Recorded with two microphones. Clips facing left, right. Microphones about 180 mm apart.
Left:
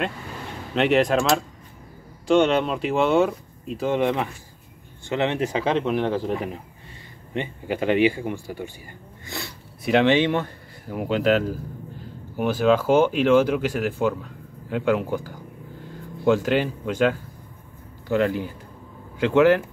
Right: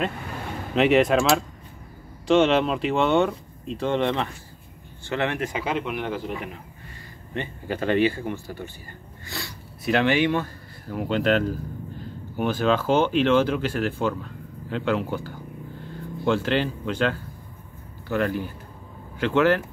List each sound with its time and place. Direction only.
0.7 s speech: centre (ahead or behind); by 5.4 s 20° left (ahead or behind)
5.4 s speech: 30° left (ahead or behind)
7.3 s speech: 15° left (ahead or behind)